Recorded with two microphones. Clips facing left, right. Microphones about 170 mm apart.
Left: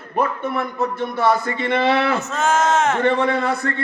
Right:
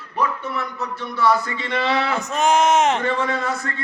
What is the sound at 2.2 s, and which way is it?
Speech, 15° right (ahead or behind).